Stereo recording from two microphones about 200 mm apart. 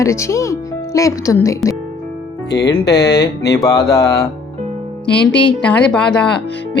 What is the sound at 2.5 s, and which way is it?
Speech, 55° left (ahead or behind).